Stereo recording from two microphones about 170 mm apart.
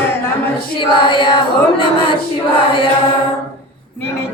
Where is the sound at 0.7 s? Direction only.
30° left (ahead or behind).